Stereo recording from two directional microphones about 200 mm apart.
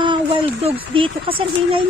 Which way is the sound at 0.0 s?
25° right (ahead or behind).